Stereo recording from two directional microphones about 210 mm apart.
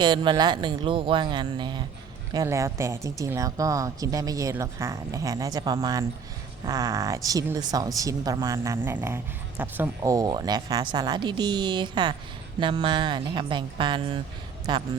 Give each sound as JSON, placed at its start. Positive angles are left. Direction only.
{"t": 0.0, "sound": "speech", "side_deg": -20}